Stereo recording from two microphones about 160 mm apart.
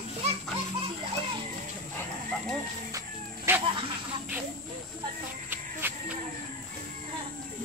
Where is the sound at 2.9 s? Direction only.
20° right (ahead or behind).